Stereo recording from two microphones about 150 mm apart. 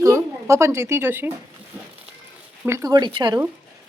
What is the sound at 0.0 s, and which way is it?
Speech, 20° right (ahead or behind).